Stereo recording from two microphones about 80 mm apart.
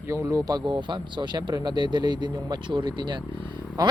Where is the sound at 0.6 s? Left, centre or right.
Right.